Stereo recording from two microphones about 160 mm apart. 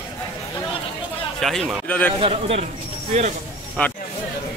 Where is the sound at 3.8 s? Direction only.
10° left (ahead or behind).